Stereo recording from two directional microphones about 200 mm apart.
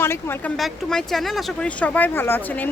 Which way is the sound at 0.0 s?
10° left (ahead or behind).